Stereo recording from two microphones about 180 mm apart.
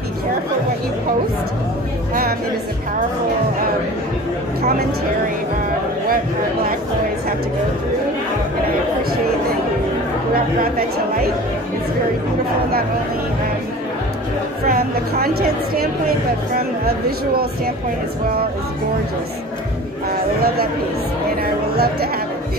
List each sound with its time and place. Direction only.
10.3 s a woman's voice: 55° right (ahead or behind)
14.7 s a woman's voice: 60° right (ahead or behind)
20.1 s a sound: 60° right (ahead or behind)
21.4 s speech: 60° right (ahead or behind)